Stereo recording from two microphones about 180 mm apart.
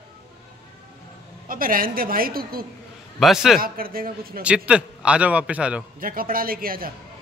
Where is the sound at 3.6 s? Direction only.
55° right (ahead or behind).